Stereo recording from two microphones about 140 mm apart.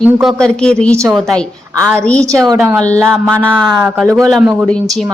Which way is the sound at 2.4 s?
20° right (ahead or behind).